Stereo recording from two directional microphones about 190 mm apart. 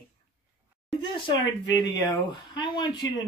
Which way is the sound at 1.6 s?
20° left (ahead or behind).